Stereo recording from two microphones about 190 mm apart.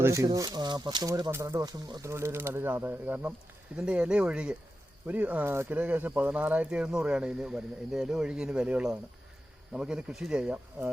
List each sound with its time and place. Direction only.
0.0 s speech: 15° right (ahead or behind)